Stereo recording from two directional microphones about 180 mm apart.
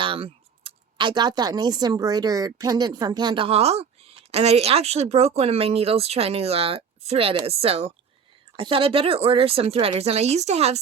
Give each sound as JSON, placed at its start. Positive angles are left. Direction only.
{"t": 0.0, "sound": "speech", "side_deg": -30}